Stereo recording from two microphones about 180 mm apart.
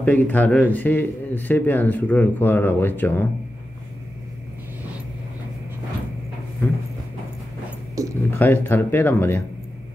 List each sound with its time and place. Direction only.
0.0 s a man's voice: 10° left (ahead or behind)
8.0 s speech: 20° right (ahead or behind)
8.4 s a man's voice: 10° left (ahead or behind)